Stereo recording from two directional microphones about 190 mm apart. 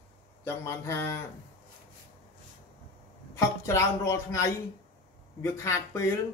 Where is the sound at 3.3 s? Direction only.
15° left (ahead or behind).